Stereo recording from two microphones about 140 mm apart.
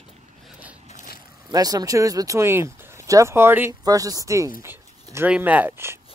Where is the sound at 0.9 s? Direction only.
60° left (ahead or behind).